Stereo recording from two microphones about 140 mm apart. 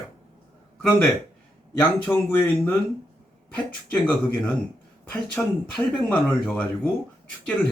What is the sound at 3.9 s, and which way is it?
Speech, 10° left (ahead or behind).